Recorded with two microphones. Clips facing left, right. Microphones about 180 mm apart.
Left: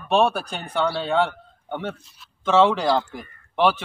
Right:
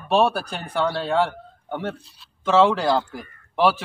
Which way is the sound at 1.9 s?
30° right (ahead or behind).